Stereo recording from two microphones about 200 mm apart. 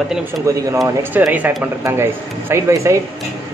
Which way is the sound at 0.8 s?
5° right (ahead or behind).